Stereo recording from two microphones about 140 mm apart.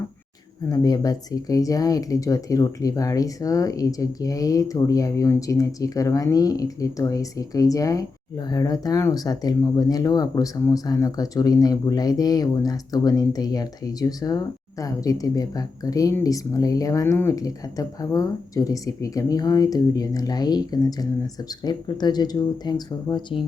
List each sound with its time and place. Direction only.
0.7 s speech: 25° left (ahead or behind)